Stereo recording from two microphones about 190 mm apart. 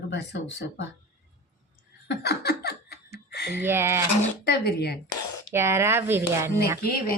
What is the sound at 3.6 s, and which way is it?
Speech, 10° right (ahead or behind).